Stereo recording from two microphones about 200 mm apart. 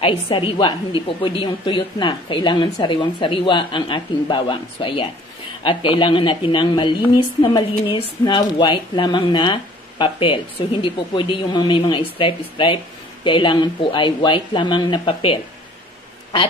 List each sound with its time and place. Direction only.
0.0 s a woman's voice: 25° left (ahead or behind)